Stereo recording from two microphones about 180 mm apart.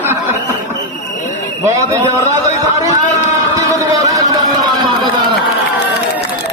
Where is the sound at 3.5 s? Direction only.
20° right (ahead or behind).